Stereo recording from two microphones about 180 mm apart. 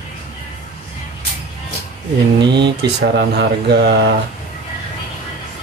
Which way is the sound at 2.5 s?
70° right (ahead or behind).